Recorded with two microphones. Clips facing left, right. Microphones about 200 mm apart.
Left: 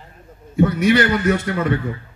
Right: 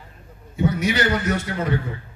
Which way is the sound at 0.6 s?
60° left (ahead or behind).